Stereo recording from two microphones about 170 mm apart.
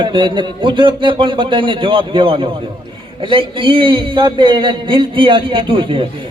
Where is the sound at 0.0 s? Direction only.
30° right (ahead or behind).